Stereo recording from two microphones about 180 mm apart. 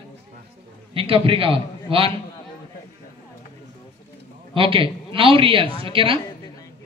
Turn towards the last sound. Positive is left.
turn(degrees=-30)  # may be behind; listen again after turning